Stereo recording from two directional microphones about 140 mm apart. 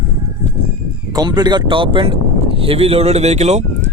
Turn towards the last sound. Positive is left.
turn(degrees=-50)  # may be behind; listen again after turning